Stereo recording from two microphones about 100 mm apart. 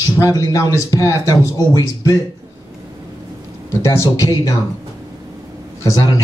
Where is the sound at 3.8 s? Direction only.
35° left (ahead or behind).